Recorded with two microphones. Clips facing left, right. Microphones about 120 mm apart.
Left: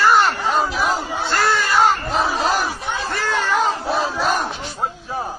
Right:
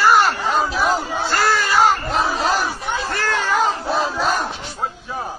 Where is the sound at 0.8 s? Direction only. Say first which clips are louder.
Right 2 dB; centre (ahead or behind).